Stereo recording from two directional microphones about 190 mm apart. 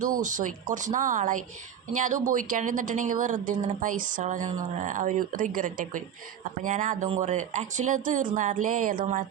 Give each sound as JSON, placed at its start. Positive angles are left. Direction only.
{"t": 0.0, "sound": "speech", "side_deg": -40}